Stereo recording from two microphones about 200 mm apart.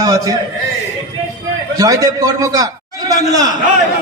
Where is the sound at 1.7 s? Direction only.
15° right (ahead or behind).